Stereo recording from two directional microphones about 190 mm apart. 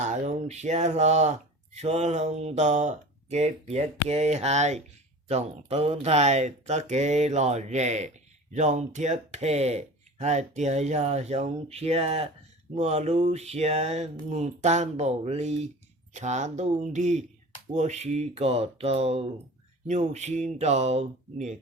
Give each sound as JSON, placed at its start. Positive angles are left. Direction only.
{"t": 0.0, "sound": "speech", "side_deg": -35}